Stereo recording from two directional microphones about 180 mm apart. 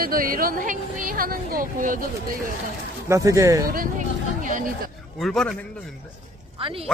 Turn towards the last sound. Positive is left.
turn(degrees=-30)  # may be behind; listen again after turning